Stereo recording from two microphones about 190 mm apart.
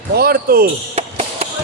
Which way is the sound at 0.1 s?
55° right (ahead or behind).